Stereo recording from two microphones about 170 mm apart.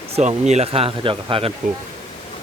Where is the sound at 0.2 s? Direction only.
40° right (ahead or behind).